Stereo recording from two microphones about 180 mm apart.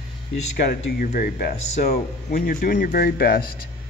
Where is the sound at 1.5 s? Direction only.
35° left (ahead or behind).